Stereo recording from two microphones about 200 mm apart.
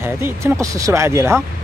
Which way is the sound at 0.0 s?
15° right (ahead or behind).